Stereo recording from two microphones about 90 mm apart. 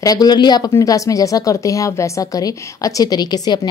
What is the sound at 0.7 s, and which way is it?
A woman's voice, 35° left (ahead or behind).